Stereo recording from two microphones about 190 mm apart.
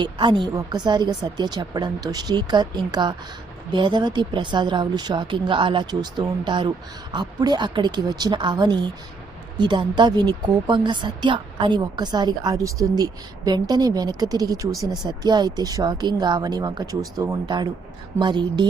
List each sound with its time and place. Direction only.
0.0 s speech: 25° right (ahead or behind)